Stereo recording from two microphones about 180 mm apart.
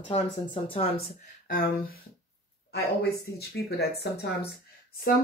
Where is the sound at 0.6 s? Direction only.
35° left (ahead or behind).